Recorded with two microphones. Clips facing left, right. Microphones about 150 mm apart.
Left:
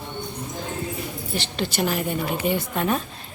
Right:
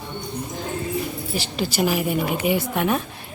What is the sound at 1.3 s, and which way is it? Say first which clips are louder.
Speech: right 1 dB; 5° right (ahead or behind).